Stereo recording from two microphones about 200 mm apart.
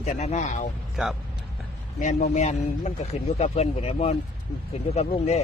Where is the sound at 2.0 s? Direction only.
35° left (ahead or behind).